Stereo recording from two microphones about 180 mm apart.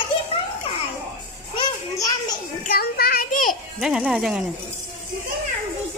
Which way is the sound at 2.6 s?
55° left (ahead or behind).